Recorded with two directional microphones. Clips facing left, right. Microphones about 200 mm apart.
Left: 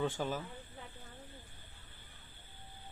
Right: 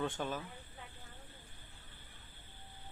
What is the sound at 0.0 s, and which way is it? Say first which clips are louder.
Speech: left 2 dB; 10° left (ahead or behind).